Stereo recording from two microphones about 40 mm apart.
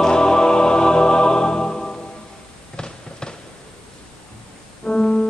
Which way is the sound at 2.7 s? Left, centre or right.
Centre.